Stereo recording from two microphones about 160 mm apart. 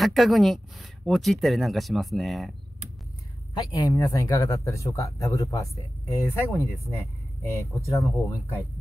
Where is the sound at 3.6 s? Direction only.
20° left (ahead or behind).